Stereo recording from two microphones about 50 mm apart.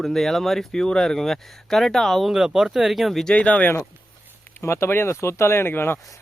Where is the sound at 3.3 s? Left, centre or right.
Left.